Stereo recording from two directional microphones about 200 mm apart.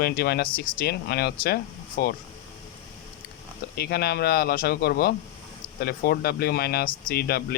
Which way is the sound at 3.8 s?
55° left (ahead or behind).